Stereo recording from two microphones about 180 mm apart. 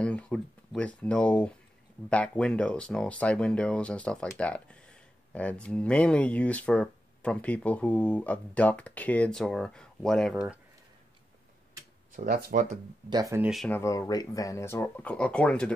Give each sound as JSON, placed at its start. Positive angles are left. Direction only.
{"t": 0.0, "sound": "speech", "side_deg": 5}
{"t": 12.2, "sound": "speech", "side_deg": -55}
{"t": 13.1, "sound": "speech", "side_deg": -15}
{"t": 13.7, "sound": "speech", "side_deg": 15}